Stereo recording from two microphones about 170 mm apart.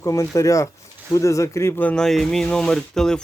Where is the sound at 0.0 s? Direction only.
20° left (ahead or behind).